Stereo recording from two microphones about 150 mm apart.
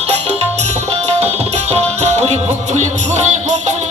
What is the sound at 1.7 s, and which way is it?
Music, 45° right (ahead or behind).